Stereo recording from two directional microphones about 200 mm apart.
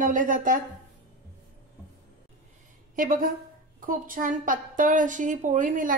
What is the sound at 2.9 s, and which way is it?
A woman's voice, 40° right (ahead or behind).